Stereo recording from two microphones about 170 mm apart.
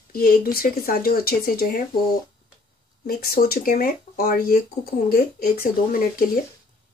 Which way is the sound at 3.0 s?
60° left (ahead or behind).